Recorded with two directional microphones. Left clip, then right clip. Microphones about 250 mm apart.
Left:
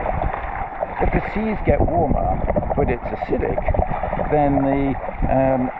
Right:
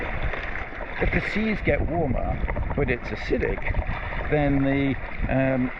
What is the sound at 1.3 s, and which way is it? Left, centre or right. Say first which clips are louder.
Speech: left 4 dB; centre.